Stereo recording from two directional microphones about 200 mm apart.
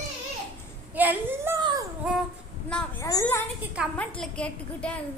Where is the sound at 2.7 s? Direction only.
15° left (ahead or behind).